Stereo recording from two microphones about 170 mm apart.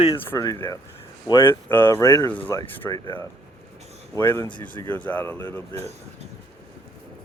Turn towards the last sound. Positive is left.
turn(degrees=15)  # may be behind; listen again after turning